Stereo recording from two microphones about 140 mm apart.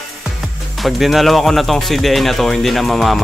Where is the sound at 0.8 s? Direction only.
Centre (ahead or behind).